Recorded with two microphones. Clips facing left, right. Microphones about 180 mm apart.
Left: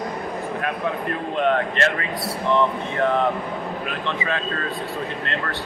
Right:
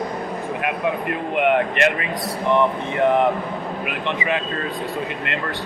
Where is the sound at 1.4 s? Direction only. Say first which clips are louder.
Right 3 dB; 15° right (ahead or behind).